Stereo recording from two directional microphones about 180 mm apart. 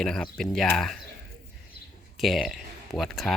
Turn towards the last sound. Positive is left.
turn(degrees=0)  # may be behind; listen again after turning